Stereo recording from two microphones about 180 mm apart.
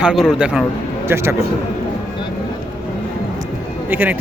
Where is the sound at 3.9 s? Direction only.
10° right (ahead or behind).